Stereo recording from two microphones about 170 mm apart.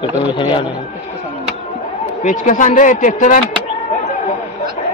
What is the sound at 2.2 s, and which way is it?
Speech, 50° left (ahead or behind).